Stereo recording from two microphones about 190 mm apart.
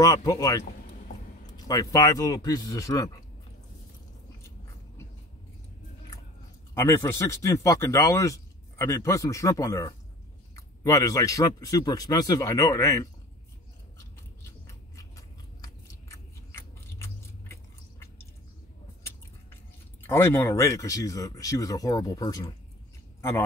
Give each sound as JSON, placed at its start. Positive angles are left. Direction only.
{"t": 0.0, "sound": "speech", "side_deg": 20}
{"t": 6.7, "sound": "speech", "side_deg": 15}
{"t": 14.7, "sound": "a sound", "side_deg": 20}
{"t": 20.0, "sound": "speech", "side_deg": 10}